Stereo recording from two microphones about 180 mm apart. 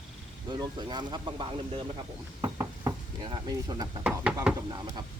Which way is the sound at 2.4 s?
20° right (ahead or behind).